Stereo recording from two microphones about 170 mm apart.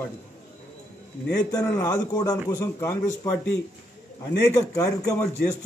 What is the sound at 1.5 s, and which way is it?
A man's voice, 20° left (ahead or behind).